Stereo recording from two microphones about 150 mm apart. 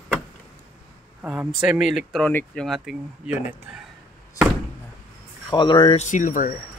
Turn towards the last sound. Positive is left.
turn(degrees=60)  # may be behind; listen again after turning